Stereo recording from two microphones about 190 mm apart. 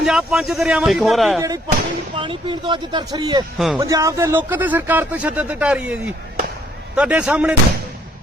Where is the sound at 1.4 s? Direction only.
20° right (ahead or behind).